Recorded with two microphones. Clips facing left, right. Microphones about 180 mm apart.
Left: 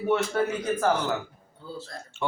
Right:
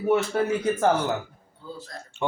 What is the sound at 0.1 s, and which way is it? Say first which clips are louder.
A man's voice: right 3 dB; 25° right (ahead or behind).